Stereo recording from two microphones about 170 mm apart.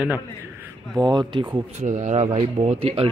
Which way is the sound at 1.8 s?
45° right (ahead or behind).